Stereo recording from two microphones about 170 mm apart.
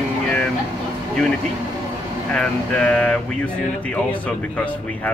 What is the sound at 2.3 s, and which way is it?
Speech, 5° left (ahead or behind).